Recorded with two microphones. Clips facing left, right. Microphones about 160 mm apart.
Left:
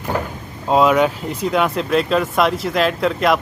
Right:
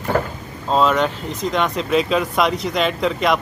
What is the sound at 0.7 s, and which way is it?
Speech, 10° left (ahead or behind).